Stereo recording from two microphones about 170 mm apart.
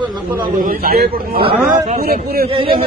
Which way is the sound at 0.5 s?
60° right (ahead or behind).